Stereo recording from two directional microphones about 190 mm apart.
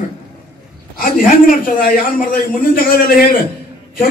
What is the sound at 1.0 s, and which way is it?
A man's voice, 45° left (ahead or behind).